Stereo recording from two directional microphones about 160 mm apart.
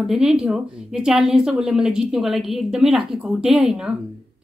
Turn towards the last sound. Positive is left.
turn(degrees=-5)  # may be behind; listen again after turning